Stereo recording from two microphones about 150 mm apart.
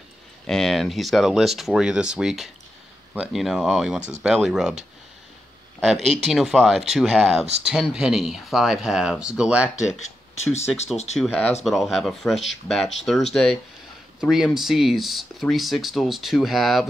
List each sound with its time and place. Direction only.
0.5 s speech: centre (ahead or behind)
5.8 s speech: centre (ahead or behind)
9.9 s speech: 50° left (ahead or behind)
11.1 s speech: 5° right (ahead or behind)